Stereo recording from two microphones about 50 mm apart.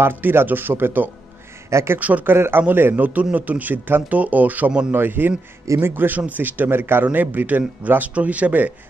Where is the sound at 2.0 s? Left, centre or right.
Right.